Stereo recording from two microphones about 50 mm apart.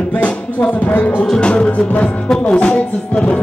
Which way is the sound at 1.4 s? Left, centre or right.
Left.